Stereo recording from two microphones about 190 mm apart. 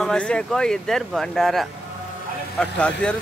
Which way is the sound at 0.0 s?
5° left (ahead or behind).